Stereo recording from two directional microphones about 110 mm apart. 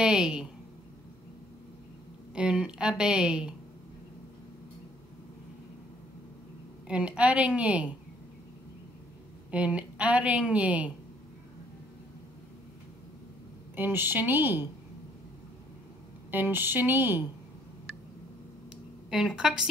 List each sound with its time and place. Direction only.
0.0 s a woman's voice: 5° right (ahead or behind)
2.3 s a woman's voice: 10° right (ahead or behind)
6.9 s a woman's voice: 10° right (ahead or behind)
9.5 s a woman's voice: 10° right (ahead or behind)
13.7 s a woman's voice: 20° right (ahead or behind)
16.3 s a woman's voice: 20° right (ahead or behind)
19.0 s a woman's voice: 5° right (ahead or behind)